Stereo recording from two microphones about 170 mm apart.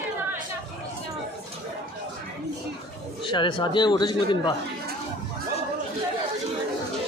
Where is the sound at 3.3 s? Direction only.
25° left (ahead or behind).